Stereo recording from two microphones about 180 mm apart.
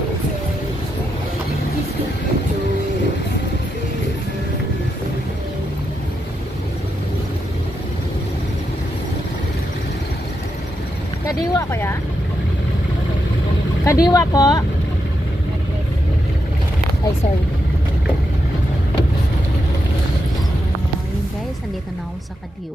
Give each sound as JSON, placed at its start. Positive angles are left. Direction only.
{"t": 11.5, "sound": "vehicle", "side_deg": 15}
{"t": 13.8, "sound": "vehicle", "side_deg": 20}